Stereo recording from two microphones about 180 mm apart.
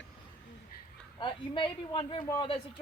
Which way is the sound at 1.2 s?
25° left (ahead or behind).